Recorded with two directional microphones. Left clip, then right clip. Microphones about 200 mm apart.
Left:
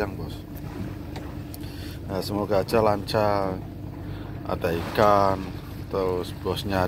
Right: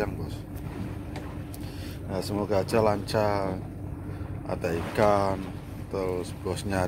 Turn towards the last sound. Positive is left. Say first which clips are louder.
# left 4 dB
turn(degrees=-5)  # may be behind; listen again after turning